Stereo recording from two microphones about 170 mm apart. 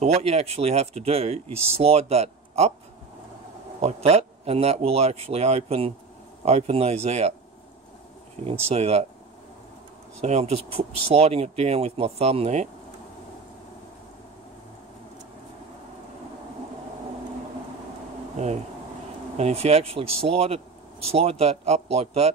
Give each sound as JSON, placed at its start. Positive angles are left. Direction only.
{"t": 0.0, "sound": "speech", "side_deg": -40}
{"t": 3.8, "sound": "speech", "side_deg": -40}
{"t": 8.5, "sound": "speech", "side_deg": -35}
{"t": 10.2, "sound": "speech", "side_deg": -40}
{"t": 18.3, "sound": "a sound", "side_deg": -45}
{"t": 19.3, "sound": "speech", "side_deg": -40}